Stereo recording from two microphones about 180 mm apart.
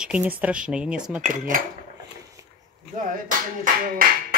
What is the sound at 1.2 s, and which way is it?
Speech, 45° right (ahead or behind).